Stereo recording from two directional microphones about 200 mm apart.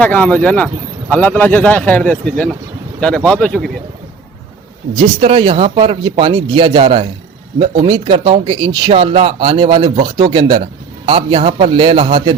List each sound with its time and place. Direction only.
0.0 s speech: 5° left (ahead or behind)
5.2 s speech: 25° right (ahead or behind)